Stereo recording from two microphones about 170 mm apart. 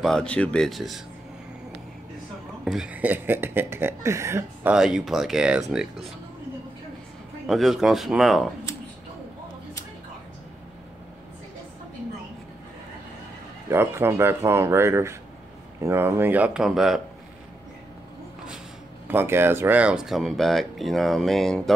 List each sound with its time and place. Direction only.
0.0 s speech: 5° left (ahead or behind)
2.6 s speech: 5° right (ahead or behind)
4.7 s speech: 5° right (ahead or behind)
7.4 s speech: centre (ahead or behind)
13.7 s speech: 15° right (ahead or behind)
19.0 s speech: 15° right (ahead or behind)